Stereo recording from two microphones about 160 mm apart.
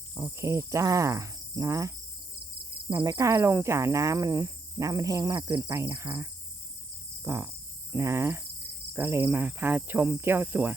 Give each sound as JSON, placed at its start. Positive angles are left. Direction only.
{"t": 0.1, "sound": "speech", "side_deg": -15}
{"t": 2.9, "sound": "speech", "side_deg": -25}
{"t": 7.3, "sound": "speech", "side_deg": -15}